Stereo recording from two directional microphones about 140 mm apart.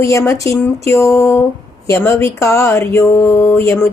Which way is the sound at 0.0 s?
20° left (ahead or behind).